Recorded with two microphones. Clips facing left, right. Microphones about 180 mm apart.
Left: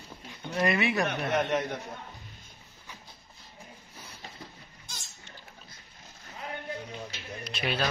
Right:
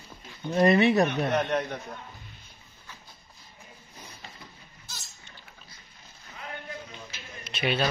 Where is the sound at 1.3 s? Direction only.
10° left (ahead or behind).